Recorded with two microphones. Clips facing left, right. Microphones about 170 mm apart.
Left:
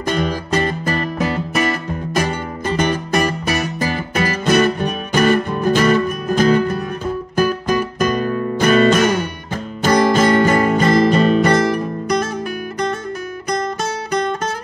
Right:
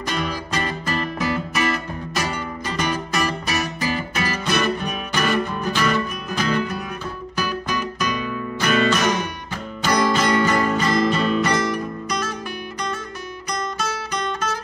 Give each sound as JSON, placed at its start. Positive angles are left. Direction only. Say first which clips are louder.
{"t": 0.1, "sound": "music", "louder": "left 7 dB", "side_deg": 50}